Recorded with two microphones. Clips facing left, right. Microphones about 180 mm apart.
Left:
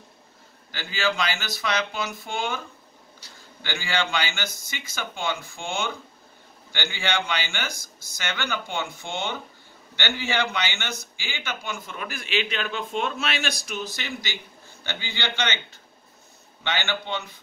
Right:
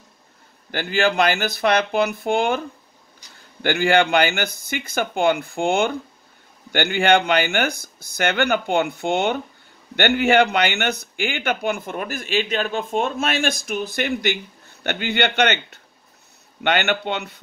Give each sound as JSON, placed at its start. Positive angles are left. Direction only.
{"t": 0.7, "sound": "a man's voice", "side_deg": -55}
{"t": 3.6, "sound": "a man's voice", "side_deg": -55}